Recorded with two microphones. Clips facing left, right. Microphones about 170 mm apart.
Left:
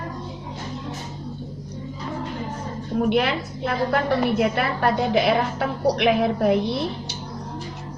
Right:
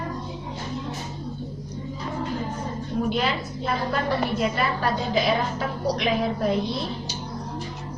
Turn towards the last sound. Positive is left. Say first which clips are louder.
# left 4 dB
turn(degrees=65)  # may be behind; listen again after turning